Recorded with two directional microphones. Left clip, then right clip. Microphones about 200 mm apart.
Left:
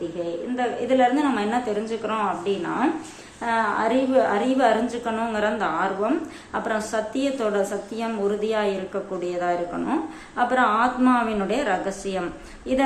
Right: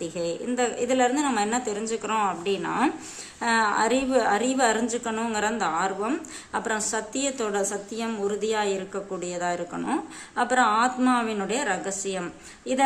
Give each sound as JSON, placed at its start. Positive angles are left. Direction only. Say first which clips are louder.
{"t": 0.5, "sound": "a woman's voice", "louder": "left 3 dB", "side_deg": -30}